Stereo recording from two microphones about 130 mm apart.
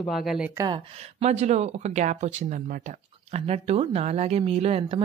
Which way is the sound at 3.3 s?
55° right (ahead or behind).